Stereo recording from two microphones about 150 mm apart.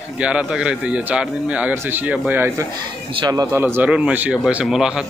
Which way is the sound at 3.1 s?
30° right (ahead or behind).